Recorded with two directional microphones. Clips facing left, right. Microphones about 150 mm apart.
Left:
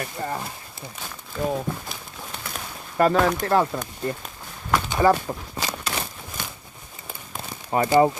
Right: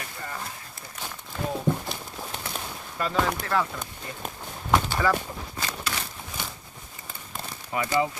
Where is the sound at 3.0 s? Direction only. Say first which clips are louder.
Left 8 dB; 55° left (ahead or behind).